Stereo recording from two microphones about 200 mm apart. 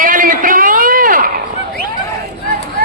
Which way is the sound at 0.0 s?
45° right (ahead or behind).